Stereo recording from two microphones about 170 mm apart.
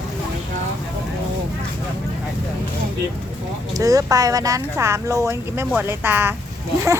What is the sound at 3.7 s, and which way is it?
Speech, 20° right (ahead or behind).